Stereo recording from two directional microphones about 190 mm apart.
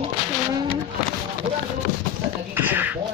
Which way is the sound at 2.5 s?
10° right (ahead or behind).